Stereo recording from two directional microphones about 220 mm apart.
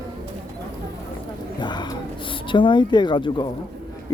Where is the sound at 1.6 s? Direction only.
20° left (ahead or behind).